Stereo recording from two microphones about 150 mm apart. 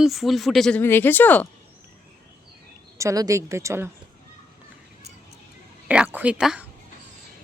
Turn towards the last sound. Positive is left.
turn(degrees=-5)  # may be behind; listen again after turning